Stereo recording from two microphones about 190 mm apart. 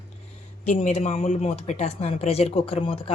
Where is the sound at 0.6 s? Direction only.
40° left (ahead or behind).